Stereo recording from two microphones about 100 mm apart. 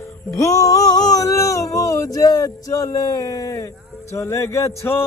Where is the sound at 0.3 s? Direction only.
30° left (ahead or behind).